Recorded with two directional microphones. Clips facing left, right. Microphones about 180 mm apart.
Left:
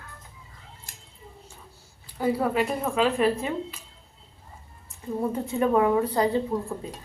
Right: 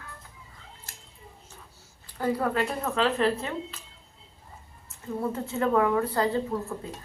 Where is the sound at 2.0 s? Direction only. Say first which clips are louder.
Left 2 dB; 10° left (ahead or behind).